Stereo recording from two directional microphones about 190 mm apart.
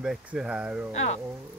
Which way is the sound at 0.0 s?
5° right (ahead or behind).